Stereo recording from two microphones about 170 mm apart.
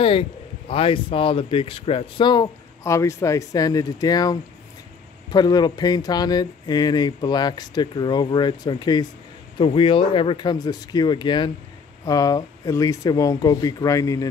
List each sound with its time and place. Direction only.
0.0 s speech: 30° left (ahead or behind)